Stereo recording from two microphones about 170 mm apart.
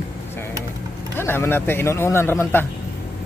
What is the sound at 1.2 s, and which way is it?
Speech, 15° left (ahead or behind).